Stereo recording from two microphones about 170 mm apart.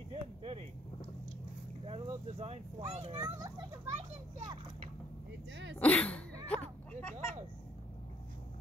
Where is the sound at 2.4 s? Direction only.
35° right (ahead or behind).